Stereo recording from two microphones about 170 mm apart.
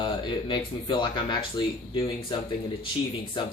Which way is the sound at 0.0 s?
30° left (ahead or behind).